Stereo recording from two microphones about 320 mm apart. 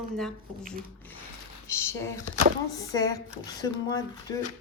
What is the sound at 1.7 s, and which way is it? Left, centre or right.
Speech, centre.